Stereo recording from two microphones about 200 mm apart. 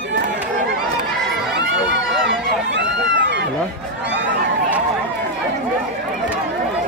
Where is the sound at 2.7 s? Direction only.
60° right (ahead or behind).